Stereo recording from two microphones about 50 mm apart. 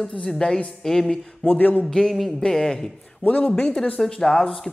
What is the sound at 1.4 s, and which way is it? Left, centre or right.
Speech, left.